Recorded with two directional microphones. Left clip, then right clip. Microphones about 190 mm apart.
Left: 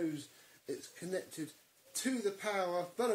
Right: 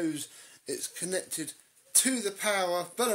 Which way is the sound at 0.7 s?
55° right (ahead or behind).